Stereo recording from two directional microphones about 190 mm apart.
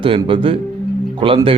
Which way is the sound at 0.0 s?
25° right (ahead or behind).